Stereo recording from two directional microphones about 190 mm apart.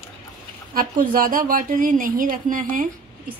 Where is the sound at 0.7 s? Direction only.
45° right (ahead or behind).